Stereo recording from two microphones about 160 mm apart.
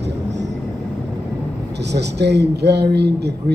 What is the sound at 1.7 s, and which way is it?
Speech, 90° right.